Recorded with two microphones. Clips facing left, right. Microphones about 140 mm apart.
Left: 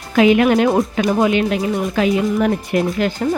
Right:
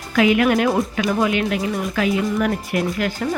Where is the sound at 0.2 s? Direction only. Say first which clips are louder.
Left 4 dB; 25° left (ahead or behind).